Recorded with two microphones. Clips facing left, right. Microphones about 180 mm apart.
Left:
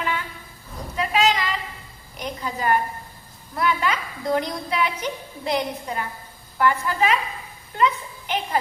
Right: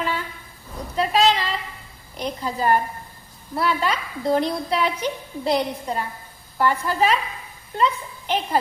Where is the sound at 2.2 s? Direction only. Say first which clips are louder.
Right 3 dB; 35° right (ahead or behind).